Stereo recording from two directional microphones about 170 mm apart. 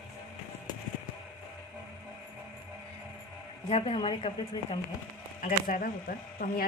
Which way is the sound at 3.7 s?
30° left (ahead or behind).